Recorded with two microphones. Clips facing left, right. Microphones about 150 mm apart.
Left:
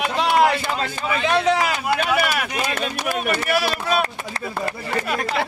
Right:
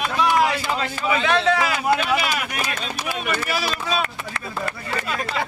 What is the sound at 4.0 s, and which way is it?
Speech, 35° left (ahead or behind).